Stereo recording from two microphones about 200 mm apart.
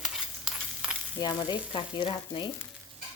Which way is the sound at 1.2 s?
20° left (ahead or behind).